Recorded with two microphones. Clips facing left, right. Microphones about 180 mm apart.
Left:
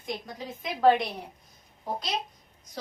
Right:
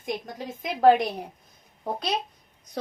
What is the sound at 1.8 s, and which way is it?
Speech, 65° right (ahead or behind).